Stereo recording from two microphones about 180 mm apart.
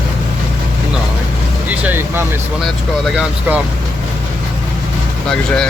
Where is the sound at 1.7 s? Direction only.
10° right (ahead or behind).